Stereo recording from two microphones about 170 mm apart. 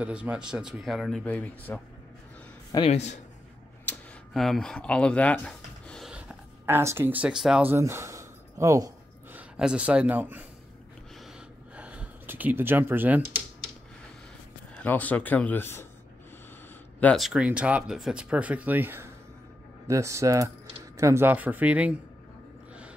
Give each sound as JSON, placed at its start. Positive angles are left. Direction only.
{"t": 0.0, "sound": "speech", "side_deg": -5}
{"t": 2.9, "sound": "a man's voice", "side_deg": 40}
{"t": 3.8, "sound": "a sound", "side_deg": 0}
{"t": 7.7, "sound": "a sound", "side_deg": -15}
{"t": 9.4, "sound": "speech", "side_deg": -5}
{"t": 11.1, "sound": "gasp", "side_deg": -5}
{"t": 14.8, "sound": "speech", "side_deg": 10}
{"t": 17.0, "sound": "speech", "side_deg": 0}